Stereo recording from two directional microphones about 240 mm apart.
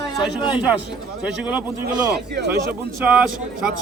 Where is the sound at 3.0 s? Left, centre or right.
Centre.